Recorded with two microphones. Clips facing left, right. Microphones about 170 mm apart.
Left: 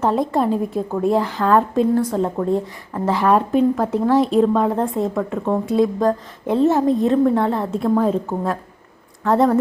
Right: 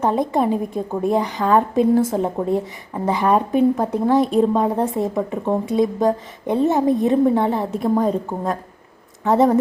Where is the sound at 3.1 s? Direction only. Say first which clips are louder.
Left 1 dB; centre (ahead or behind).